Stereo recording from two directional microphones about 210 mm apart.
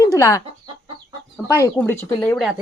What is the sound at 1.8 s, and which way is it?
Speech, 10° left (ahead or behind).